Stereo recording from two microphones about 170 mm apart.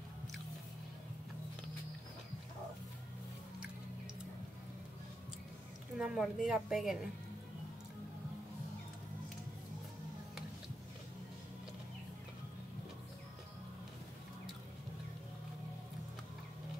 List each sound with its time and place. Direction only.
5.9 s a woman's voice: 5° right (ahead or behind)